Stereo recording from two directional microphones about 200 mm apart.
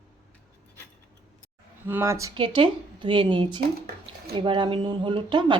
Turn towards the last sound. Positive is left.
turn(degrees=-25)  # may be behind; listen again after turning